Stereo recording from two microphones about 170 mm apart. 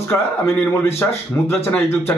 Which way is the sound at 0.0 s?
15° left (ahead or behind).